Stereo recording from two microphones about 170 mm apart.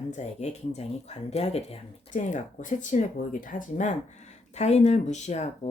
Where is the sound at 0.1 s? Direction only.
40° left (ahead or behind).